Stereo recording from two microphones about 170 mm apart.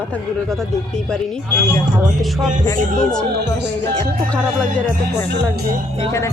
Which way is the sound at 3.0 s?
5° left (ahead or behind).